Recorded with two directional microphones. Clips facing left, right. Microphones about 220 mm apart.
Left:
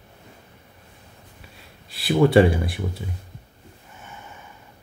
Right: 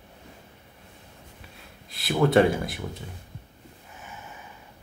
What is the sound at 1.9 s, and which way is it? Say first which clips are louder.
Speech: left 4 dB; centre (ahead or behind).